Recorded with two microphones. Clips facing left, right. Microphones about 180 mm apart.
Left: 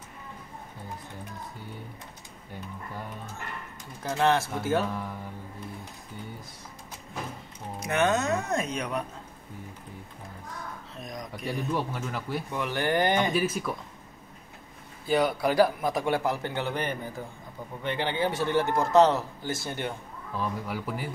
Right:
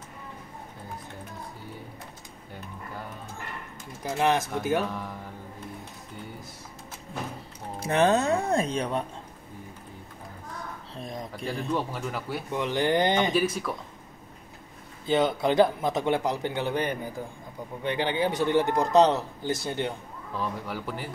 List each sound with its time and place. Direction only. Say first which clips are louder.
4.0 s a man's voice: even; 15° right (ahead or behind)
7.8 s speech: right 3 dB; 30° right (ahead or behind)
11.0 s a sound: right 3 dB; 30° right (ahead or behind)
11.7 s speech: right 1 dB; centre (ahead or behind)
12.5 s a man's voice: right 3 dB; 20° right (ahead or behind)
13.3 s speech: right 1 dB; centre (ahead or behind)
15.0 s a man's voice: right 1 dB; 25° right (ahead or behind)
20.3 s speech: even; 5° left (ahead or behind)